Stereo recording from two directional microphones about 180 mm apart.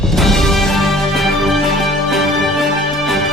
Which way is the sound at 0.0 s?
Centre (ahead or behind).